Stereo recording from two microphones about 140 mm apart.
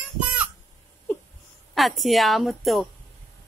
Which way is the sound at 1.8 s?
Centre (ahead or behind).